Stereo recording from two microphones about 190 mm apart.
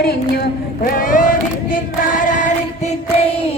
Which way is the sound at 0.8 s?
45° left (ahead or behind).